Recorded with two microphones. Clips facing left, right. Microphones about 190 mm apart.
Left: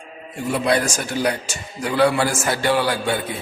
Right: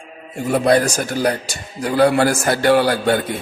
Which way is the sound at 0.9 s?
40° right (ahead or behind).